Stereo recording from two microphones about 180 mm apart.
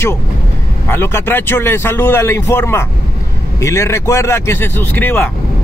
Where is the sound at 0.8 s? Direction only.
10° left (ahead or behind).